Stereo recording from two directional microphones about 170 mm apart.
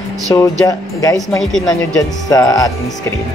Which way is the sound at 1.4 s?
Centre (ahead or behind).